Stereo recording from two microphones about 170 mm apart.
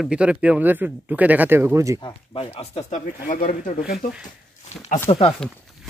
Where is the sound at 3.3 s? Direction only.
50° left (ahead or behind).